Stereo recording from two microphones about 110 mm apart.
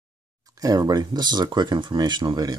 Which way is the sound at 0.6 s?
35° right (ahead or behind).